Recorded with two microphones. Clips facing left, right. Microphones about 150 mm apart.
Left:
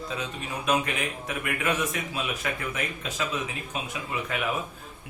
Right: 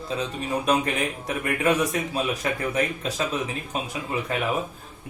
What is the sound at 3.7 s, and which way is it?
Speech, 35° right (ahead or behind).